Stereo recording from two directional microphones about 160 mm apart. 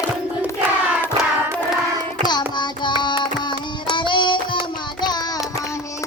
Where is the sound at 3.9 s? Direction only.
30° left (ahead or behind).